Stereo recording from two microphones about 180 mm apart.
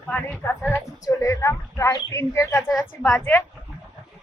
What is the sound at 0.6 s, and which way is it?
Speech, 15° left (ahead or behind).